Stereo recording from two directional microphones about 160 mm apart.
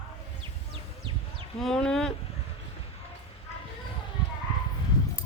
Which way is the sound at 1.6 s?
5° left (ahead or behind).